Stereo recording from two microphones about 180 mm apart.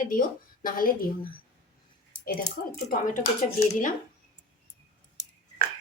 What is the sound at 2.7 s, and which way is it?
A woman's voice, 45° left (ahead or behind).